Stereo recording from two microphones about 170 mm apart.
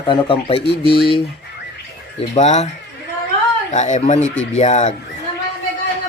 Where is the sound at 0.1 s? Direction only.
30° left (ahead or behind).